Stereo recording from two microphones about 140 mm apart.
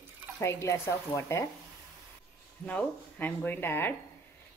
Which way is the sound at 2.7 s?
10° left (ahead or behind).